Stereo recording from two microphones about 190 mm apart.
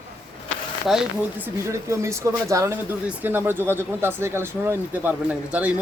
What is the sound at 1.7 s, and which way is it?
Speech, 15° right (ahead or behind).